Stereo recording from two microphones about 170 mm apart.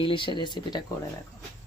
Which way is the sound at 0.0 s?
30° left (ahead or behind).